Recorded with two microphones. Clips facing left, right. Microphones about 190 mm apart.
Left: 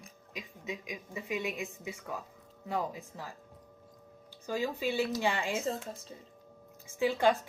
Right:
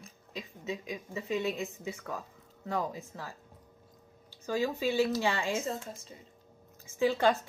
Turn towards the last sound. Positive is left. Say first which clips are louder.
# right 1 dB
turn(degrees=10)  # may be behind; listen again after turning